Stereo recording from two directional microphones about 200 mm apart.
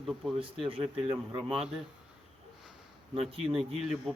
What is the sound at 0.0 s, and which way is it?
Speech, centre (ahead or behind).